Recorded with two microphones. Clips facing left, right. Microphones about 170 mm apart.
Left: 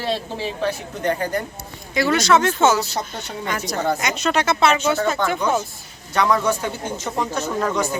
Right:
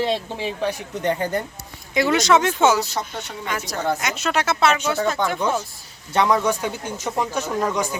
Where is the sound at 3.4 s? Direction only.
Centre (ahead or behind).